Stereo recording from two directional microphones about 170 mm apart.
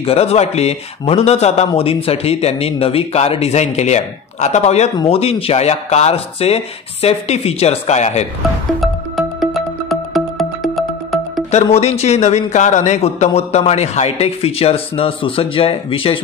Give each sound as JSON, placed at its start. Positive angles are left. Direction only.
{"t": 0.0, "sound": "a man's voice", "side_deg": 35}
{"t": 8.8, "sound": "music", "side_deg": 0}
{"t": 11.5, "sound": "a man's voice", "side_deg": 40}